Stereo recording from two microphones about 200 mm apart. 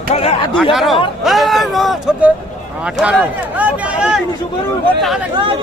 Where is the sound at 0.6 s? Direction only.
Centre (ahead or behind).